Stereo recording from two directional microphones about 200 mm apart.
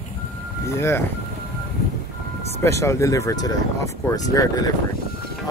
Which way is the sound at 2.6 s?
15° left (ahead or behind).